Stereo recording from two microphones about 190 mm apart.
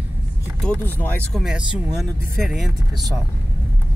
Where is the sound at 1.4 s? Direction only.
5° right (ahead or behind).